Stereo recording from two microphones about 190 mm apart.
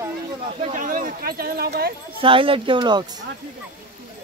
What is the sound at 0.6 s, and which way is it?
Speech, 45° right (ahead or behind).